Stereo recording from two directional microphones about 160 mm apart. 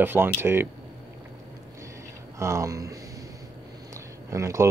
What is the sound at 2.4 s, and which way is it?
Speech, 20° right (ahead or behind).